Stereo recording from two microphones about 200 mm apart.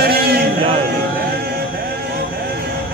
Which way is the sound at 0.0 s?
55° right (ahead or behind).